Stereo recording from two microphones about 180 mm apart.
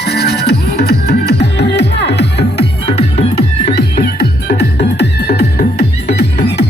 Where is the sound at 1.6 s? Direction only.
70° left (ahead or behind).